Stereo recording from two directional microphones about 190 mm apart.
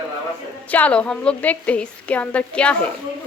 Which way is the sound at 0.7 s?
5° left (ahead or behind).